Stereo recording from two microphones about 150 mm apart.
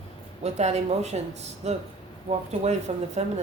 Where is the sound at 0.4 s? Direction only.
50° right (ahead or behind).